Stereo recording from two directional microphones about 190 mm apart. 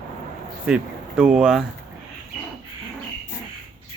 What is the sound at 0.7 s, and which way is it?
Speech, 5° right (ahead or behind).